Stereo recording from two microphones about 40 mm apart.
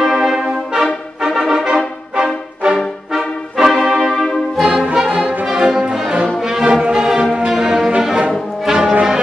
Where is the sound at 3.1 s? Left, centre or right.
Centre.